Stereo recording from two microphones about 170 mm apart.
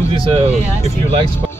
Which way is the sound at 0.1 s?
30° right (ahead or behind).